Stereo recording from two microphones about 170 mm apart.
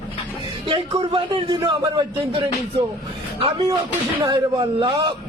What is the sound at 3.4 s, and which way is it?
A man's voice, 30° right (ahead or behind).